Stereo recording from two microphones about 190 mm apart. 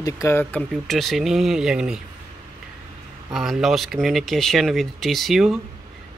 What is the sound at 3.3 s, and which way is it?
Speech, centre (ahead or behind).